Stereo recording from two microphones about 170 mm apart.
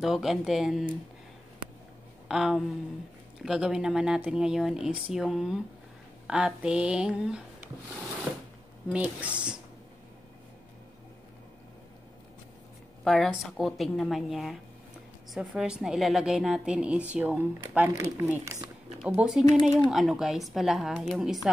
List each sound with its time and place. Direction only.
0.0 s a woman's voice: centre (ahead or behind)
2.2 s a sound: 5° right (ahead or behind)
3.4 s a woman's voice: 5° right (ahead or behind)
8.9 s speech: 5° right (ahead or behind)
13.0 s a woman's voice: centre (ahead or behind)